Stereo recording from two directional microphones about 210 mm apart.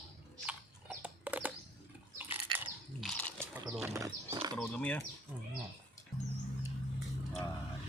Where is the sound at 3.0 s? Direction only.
5° left (ahead or behind).